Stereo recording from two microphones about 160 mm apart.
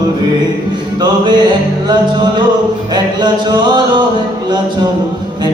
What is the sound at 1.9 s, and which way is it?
Music, 30° right (ahead or behind).